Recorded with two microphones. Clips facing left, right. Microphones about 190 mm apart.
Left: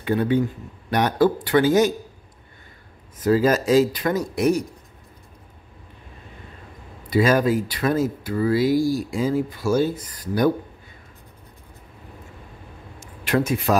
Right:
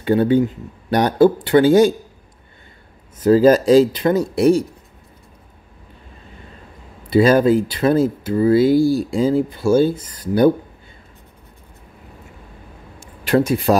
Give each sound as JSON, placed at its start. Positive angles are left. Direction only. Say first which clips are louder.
{"t": 0.0, "sound": "speech", "louder": "right 5 dB", "side_deg": -30}
{"t": 3.3, "sound": "speech", "louder": "right 7 dB", "side_deg": -30}
{"t": 7.1, "sound": "speech", "louder": "right 6 dB", "side_deg": -30}
{"t": 13.0, "sound": "a sound", "louder": "right 5 dB", "side_deg": -35}